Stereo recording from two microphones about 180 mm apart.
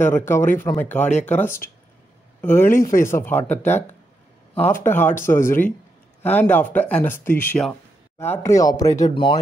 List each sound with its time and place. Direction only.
0.3 s speech: 15° left (ahead or behind)